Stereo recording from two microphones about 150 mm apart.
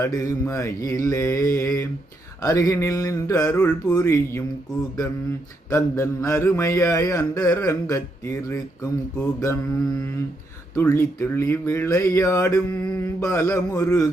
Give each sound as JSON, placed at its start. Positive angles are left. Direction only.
{"t": 0.0, "sound": "speech", "side_deg": 20}
{"t": 5.7, "sound": "speech", "side_deg": 20}
{"t": 9.1, "sound": "mantra", "side_deg": 15}
{"t": 10.8, "sound": "speech", "side_deg": 20}